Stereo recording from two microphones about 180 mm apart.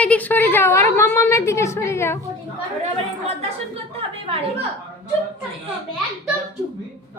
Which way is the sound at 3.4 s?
35° right (ahead or behind).